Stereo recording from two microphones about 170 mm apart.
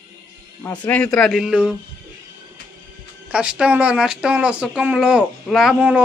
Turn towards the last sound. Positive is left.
turn(degrees=-5)  # may be behind; listen again after turning